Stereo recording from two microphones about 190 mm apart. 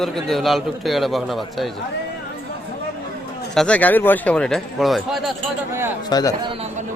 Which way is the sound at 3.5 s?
5° left (ahead or behind).